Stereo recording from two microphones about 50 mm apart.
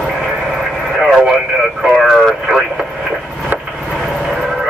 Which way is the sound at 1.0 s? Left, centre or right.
Centre.